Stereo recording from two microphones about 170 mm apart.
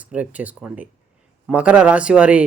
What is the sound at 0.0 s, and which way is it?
Speech, 10° right (ahead or behind).